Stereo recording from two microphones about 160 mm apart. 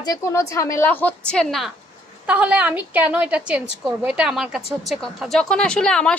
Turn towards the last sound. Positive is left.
turn(degrees=5)  # may be behind; listen again after turning